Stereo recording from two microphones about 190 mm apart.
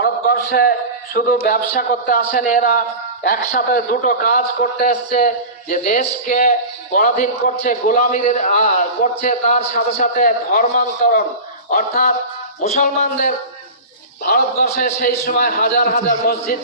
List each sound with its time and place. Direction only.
0.0 s a sound: 55° left (ahead or behind)
1.5 s a man's voice: 45° left (ahead or behind)
12.6 s a man's voice: 40° left (ahead or behind)